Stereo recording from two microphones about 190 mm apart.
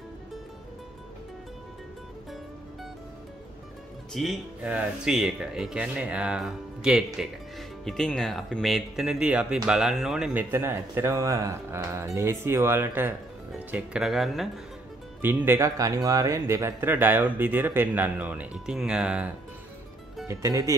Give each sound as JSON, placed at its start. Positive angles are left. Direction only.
{"t": 4.1, "sound": "speech", "side_deg": 0}
{"t": 20.2, "sound": "speech", "side_deg": -15}